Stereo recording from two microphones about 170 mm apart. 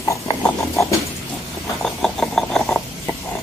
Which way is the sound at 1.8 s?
5° left (ahead or behind).